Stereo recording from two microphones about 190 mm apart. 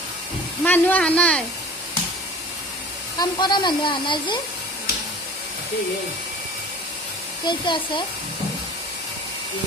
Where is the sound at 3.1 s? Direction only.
25° left (ahead or behind).